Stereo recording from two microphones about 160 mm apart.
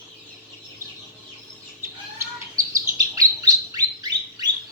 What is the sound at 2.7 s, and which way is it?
Bird, 20° right (ahead or behind).